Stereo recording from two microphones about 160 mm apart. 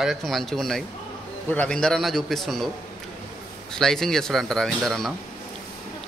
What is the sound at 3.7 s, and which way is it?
Speech, 5° left (ahead or behind).